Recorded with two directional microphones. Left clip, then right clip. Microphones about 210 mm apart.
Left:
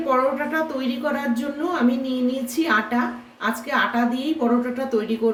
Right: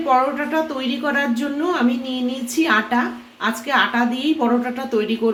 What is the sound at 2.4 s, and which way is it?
A woman's voice, 30° right (ahead or behind).